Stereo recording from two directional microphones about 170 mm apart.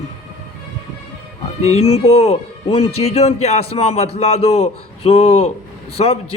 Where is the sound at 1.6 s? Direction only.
40° left (ahead or behind).